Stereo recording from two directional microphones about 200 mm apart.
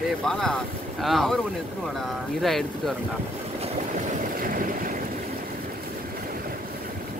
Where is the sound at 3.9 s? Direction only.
45° right (ahead or behind).